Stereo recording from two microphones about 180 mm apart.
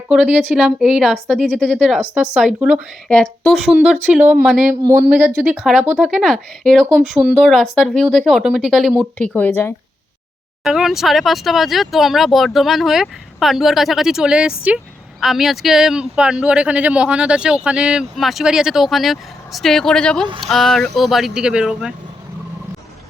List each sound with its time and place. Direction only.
0.1 s speech: 5° right (ahead or behind)
2.3 s speech: 5° right (ahead or behind)
3.1 s speech: 5° left (ahead or behind)
4.8 s speech: 15° right (ahead or behind); by 9.7 s 10° left (ahead or behind)
10.6 s speech: centre (ahead or behind)